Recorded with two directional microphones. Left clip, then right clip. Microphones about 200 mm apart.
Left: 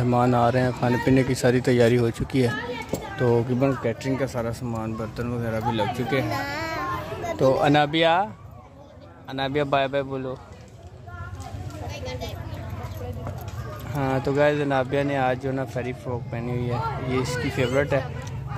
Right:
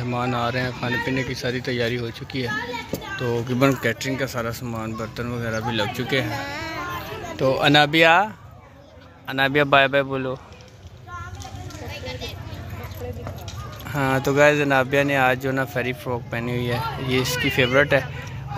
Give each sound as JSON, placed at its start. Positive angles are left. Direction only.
{"t": 0.0, "sound": "speech", "side_deg": 30}
{"t": 3.3, "sound": "speech", "side_deg": 5}
{"t": 4.0, "sound": "speech", "side_deg": 15}
{"t": 6.2, "sound": "speech", "side_deg": 60}
{"t": 7.3, "sound": "speech", "side_deg": 15}
{"t": 7.7, "sound": "speech", "side_deg": 0}
{"t": 9.3, "sound": "speech", "side_deg": 0}
{"t": 13.9, "sound": "speech", "side_deg": 0}